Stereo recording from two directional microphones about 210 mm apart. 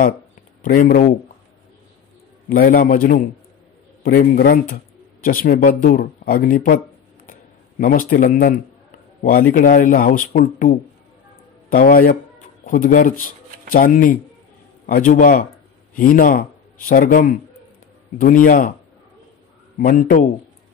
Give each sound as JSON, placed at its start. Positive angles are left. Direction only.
{"t": 0.6, "sound": "speech", "side_deg": 40}
{"t": 2.5, "sound": "speech", "side_deg": 40}
{"t": 7.8, "sound": "speech", "side_deg": 40}
{"t": 19.8, "sound": "speech", "side_deg": 40}